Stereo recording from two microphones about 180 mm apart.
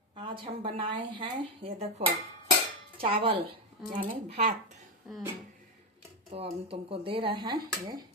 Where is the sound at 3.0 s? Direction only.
30° right (ahead or behind).